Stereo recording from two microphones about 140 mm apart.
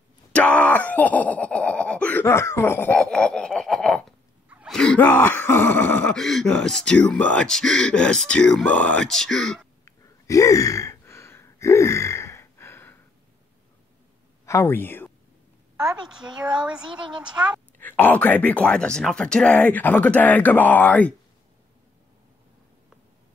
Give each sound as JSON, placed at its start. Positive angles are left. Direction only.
{"t": 0.3, "sound": "speech", "side_deg": 10}
{"t": 3.0, "sound": "snicker", "side_deg": 5}
{"t": 4.6, "sound": "gasp", "side_deg": 5}
{"t": 9.8, "sound": "gasp", "side_deg": 20}
{"t": 14.4, "sound": "a sound", "side_deg": 20}
{"t": 15.7, "sound": "a woman's voice", "side_deg": -5}
{"t": 17.8, "sound": "speech", "side_deg": 15}